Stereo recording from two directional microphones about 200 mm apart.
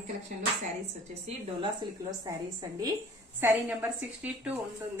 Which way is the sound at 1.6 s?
20° right (ahead or behind).